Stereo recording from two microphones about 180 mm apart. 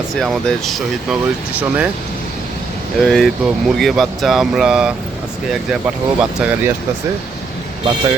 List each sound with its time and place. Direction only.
0.2 s speech: centre (ahead or behind)
3.0 s speech: centre (ahead or behind)
6.1 s speech: 5° right (ahead or behind)